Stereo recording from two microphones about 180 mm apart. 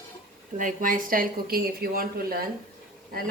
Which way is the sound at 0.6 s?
45° right (ahead or behind).